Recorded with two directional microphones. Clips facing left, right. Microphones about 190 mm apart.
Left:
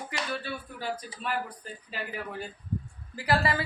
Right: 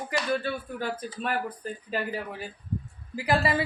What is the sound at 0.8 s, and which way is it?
Speech, 50° right (ahead or behind).